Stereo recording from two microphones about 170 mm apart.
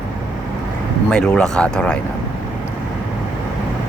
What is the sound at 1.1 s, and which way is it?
Speech, 5° left (ahead or behind).